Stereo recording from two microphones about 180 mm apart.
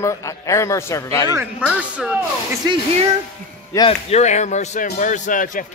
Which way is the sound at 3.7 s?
35° left (ahead or behind).